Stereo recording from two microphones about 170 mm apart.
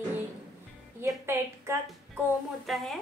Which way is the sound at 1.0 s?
15° right (ahead or behind).